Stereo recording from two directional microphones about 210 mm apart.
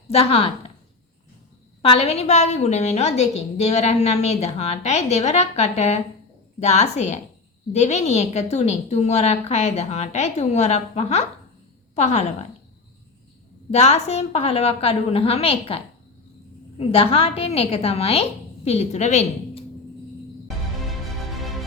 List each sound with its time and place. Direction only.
0.1 s a woman's voice: 30° left (ahead or behind)
1.8 s a woman's voice: 30° left (ahead or behind)
13.7 s a woman's voice: 30° left (ahead or behind)